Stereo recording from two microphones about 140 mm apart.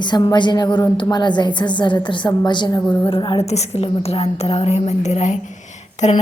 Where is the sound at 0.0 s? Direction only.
30° left (ahead or behind).